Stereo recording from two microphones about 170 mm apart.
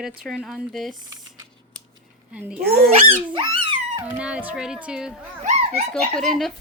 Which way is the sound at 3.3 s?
30° right (ahead or behind).